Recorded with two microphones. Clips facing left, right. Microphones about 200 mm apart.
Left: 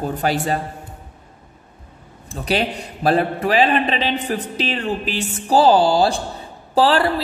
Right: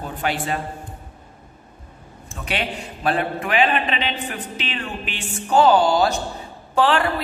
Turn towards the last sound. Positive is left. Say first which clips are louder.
# left 3 dB
turn(degrees=35)  # may be behind; listen again after turning